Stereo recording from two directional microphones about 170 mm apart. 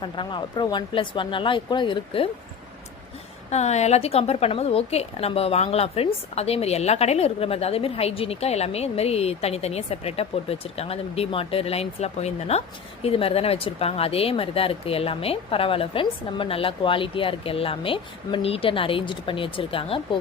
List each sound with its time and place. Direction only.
0.0 s speech: 30° left (ahead or behind)
3.5 s a woman's voice: 40° left (ahead or behind)